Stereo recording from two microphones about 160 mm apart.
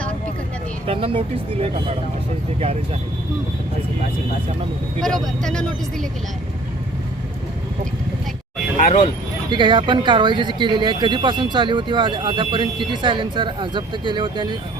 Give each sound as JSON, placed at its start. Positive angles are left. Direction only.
{"t": 0.9, "sound": "speech", "side_deg": -35}
{"t": 4.9, "sound": "speech", "side_deg": 0}
{"t": 8.8, "sound": "speech", "side_deg": 45}
{"t": 9.5, "sound": "speech", "side_deg": -30}